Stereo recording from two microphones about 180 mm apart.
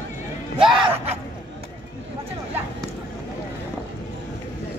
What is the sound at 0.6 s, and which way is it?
Music, 30° right (ahead or behind).